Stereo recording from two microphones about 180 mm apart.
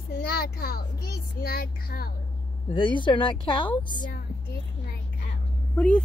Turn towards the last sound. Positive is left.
turn(degrees=10)  # may be behind; listen again after turning